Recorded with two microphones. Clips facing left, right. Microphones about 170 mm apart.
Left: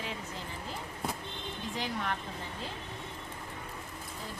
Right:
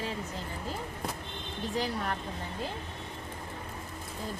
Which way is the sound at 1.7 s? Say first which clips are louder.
Right 3 dB; 40° right (ahead or behind).